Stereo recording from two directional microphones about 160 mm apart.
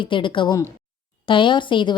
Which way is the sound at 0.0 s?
30° left (ahead or behind).